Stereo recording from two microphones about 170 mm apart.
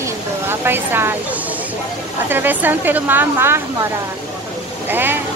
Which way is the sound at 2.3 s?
10° right (ahead or behind).